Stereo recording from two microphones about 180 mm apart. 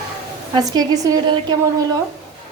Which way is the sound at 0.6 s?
20° right (ahead or behind).